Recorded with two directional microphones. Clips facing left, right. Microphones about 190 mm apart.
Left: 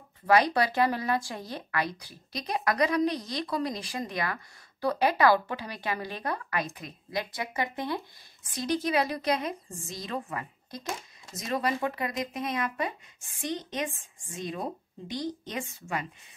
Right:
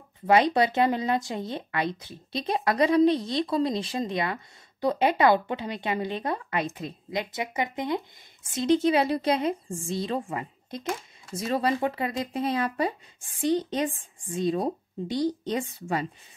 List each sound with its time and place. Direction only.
0.3 s speech: 25° right (ahead or behind)